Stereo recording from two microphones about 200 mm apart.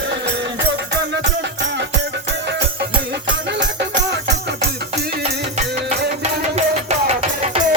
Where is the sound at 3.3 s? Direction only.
60° right (ahead or behind).